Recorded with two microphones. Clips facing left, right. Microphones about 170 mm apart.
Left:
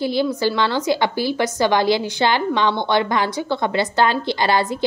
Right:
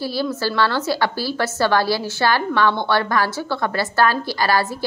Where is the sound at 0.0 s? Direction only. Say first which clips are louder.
Left 3 dB; 20° left (ahead or behind).